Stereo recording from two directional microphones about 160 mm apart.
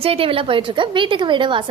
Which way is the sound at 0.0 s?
35° right (ahead or behind).